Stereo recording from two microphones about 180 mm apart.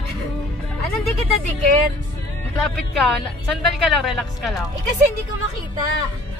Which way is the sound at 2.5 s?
Centre (ahead or behind).